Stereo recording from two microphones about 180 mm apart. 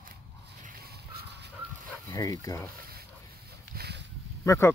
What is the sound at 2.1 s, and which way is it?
Speech, 20° left (ahead or behind).